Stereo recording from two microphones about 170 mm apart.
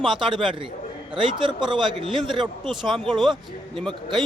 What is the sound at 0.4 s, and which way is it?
A man's voice, 30° right (ahead or behind).